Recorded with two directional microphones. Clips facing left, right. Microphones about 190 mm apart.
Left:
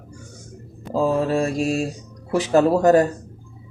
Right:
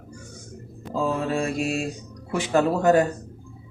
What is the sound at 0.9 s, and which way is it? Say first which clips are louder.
Speech: left 5 dB; 35° left (ahead or behind).